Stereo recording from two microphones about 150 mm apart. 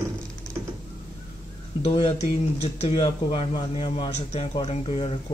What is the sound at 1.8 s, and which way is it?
A man's voice, 35° left (ahead or behind).